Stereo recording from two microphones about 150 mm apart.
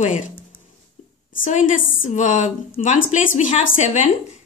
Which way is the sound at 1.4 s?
65° left (ahead or behind).